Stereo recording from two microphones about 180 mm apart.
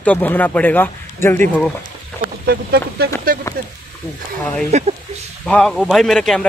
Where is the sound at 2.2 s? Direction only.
60° right (ahead or behind).